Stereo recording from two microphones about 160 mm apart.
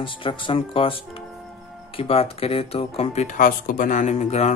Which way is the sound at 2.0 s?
35° left (ahead or behind).